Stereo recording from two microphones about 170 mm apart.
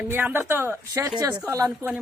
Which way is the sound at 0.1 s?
10° right (ahead or behind).